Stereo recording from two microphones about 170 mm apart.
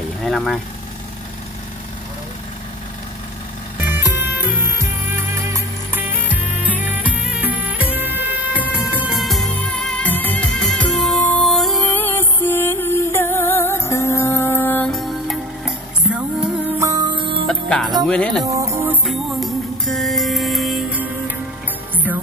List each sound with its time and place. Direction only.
0.2 s speech: centre (ahead or behind)
3.8 s music: 10° right (ahead or behind); by 17.5 s 30° right (ahead or behind)
17.5 s music: 5° left (ahead or behind)
18.4 s music: 20° right (ahead or behind)
19.0 s music: centre (ahead or behind)